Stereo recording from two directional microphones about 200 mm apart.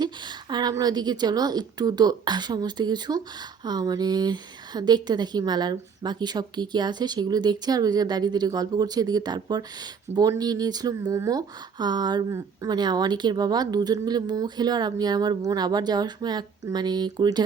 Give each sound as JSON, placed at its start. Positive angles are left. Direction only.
{"t": 0.0, "sound": "a woman's voice", "side_deg": -20}